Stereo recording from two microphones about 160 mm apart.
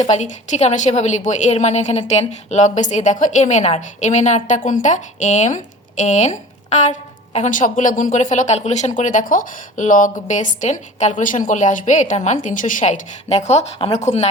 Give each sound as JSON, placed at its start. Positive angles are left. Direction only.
{"t": 0.0, "sound": "a woman's voice", "side_deg": 45}